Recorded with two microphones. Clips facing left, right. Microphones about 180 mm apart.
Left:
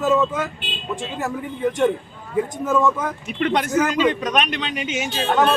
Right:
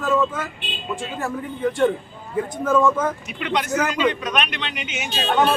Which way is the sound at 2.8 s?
Centre (ahead or behind).